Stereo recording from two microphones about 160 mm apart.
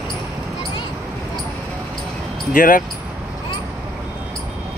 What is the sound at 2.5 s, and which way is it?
Speech, 55° left (ahead or behind).